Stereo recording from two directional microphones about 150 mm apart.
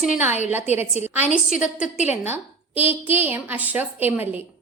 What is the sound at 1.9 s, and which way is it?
Speech, 50° left (ahead or behind).